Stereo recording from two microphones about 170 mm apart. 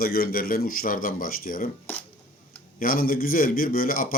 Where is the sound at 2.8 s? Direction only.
55° left (ahead or behind).